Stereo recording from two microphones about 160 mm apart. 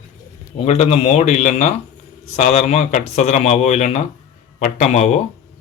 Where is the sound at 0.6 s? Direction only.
40° left (ahead or behind).